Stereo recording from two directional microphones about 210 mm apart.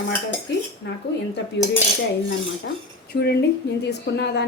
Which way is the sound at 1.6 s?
55° left (ahead or behind).